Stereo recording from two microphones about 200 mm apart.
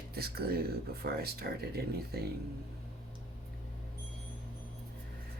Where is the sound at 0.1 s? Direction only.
50° right (ahead or behind).